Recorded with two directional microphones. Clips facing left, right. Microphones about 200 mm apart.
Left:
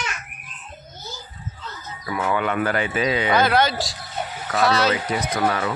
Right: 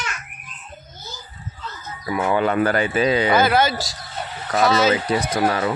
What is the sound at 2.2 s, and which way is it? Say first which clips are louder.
Speech: right 4 dB; 30° right (ahead or behind).